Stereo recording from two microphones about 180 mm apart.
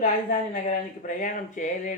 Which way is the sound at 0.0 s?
45° left (ahead or behind).